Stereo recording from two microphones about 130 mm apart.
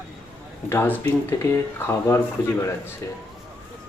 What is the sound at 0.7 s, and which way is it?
Speech, 15° left (ahead or behind).